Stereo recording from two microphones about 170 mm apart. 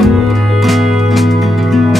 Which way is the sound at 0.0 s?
Centre (ahead or behind).